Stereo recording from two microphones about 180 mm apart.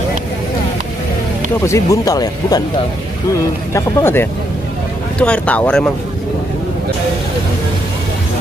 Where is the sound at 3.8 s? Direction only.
10° left (ahead or behind).